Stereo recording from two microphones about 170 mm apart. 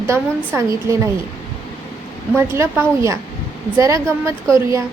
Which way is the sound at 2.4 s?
15° right (ahead or behind).